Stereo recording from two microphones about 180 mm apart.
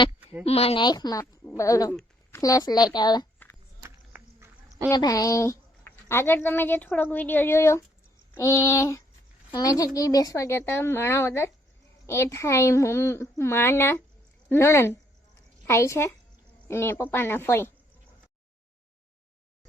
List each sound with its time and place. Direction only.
0.4 s speech: 35° left (ahead or behind); by 1.9 s 20° left (ahead or behind)
1.9 s a sound: 10° left (ahead or behind)
2.4 s speech: 20° left (ahead or behind)
3.8 s insect: 15° right (ahead or behind)
4.9 s speech: 20° left (ahead or behind)